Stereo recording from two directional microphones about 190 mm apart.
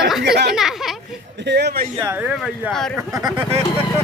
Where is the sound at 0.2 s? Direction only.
60° right (ahead or behind).